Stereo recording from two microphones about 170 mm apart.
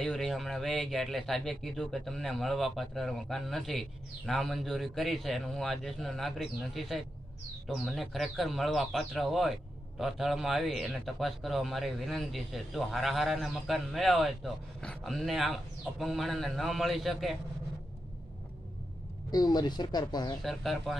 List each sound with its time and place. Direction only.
0.0 s a man's voice: 5° left (ahead or behind)
19.3 s speech: 25° left (ahead or behind)
20.4 s a man's voice: centre (ahead or behind)